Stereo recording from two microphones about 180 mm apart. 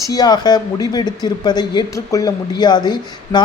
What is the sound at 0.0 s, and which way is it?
Speech, 20° left (ahead or behind).